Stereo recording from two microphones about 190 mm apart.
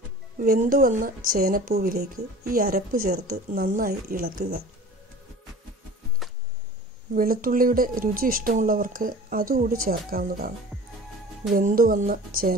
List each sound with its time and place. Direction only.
0.4 s speech: 45° right (ahead or behind)
7.2 s speech: 50° right (ahead or behind)
11.5 s speech: 50° right (ahead or behind)